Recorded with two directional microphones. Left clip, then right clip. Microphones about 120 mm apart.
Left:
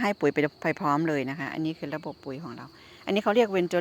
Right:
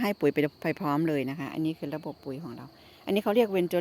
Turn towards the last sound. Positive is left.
turn(degrees=-25)  # may be behind; listen again after turning